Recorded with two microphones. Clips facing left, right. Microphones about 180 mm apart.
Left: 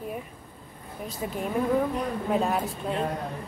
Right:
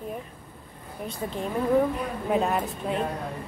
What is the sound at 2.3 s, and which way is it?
Speech, centre (ahead or behind).